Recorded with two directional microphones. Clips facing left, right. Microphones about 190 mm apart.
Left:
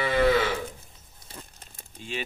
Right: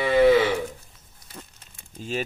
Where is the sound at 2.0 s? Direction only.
40° right (ahead or behind).